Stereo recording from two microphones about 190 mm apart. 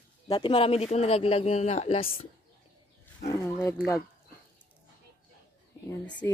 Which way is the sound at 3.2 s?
15° left (ahead or behind).